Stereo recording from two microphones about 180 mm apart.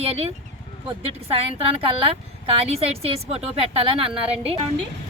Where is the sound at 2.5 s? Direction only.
35° right (ahead or behind).